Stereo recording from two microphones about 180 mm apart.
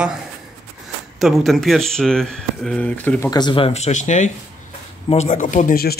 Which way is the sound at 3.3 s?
25° left (ahead or behind).